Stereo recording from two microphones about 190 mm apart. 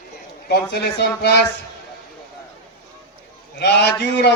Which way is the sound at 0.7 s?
60° left (ahead or behind).